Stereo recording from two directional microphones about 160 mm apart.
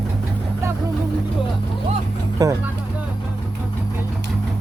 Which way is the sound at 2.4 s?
20° right (ahead or behind).